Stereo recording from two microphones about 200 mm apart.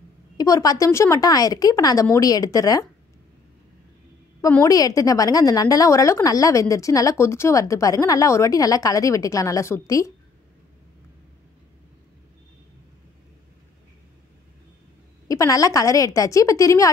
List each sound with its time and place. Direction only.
0.4 s a woman's voice: 20° left (ahead or behind)
4.4 s a woman's voice: 15° left (ahead or behind)
15.2 s a woman's voice: 15° left (ahead or behind)